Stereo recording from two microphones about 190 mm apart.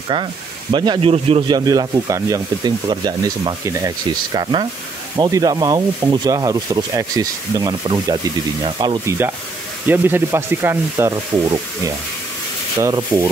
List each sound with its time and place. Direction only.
0.1 s speech: 25° right (ahead or behind)
1.7 s speech: 15° right (ahead or behind)
9.8 s sanding: 10° right (ahead or behind)
12.8 s sanding: 15° right (ahead or behind)